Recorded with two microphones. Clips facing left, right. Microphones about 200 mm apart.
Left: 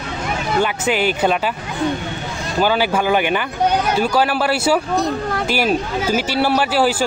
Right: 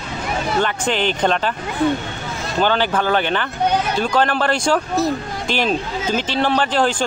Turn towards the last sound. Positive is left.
turn(degrees=10)  # may be behind; listen again after turning